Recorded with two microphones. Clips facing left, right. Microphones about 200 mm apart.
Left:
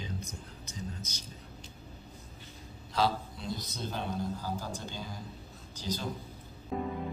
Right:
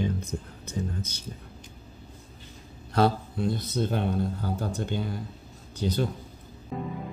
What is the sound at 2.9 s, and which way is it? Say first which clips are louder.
Speech: right 6 dB; 55° right (ahead or behind).